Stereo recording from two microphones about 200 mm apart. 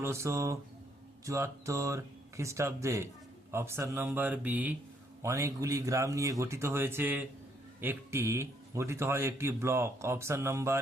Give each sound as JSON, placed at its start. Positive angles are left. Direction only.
{"t": 0.0, "sound": "a man's voice", "side_deg": -15}